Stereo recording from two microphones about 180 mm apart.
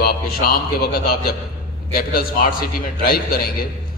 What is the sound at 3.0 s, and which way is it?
Speech, 55° left (ahead or behind).